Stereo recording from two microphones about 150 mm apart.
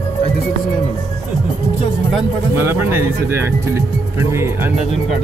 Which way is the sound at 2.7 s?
15° right (ahead or behind).